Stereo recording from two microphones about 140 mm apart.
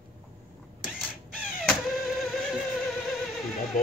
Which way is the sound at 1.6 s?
Centre (ahead or behind).